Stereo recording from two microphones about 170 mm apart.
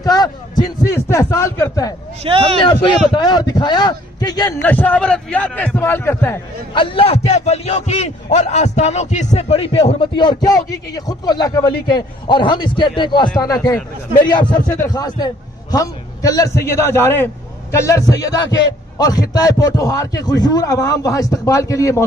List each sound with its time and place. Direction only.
0.0 s a man's voice: 25° left (ahead or behind)
2.3 s a man's voice: 30° right (ahead or behind)
3.3 s a man's voice: 25° left (ahead or behind)
4.6 s a man's voice: 10° left (ahead or behind)
6.7 s a man's voice: 30° left (ahead or behind)
14.3 s a man's voice: 25° left (ahead or behind)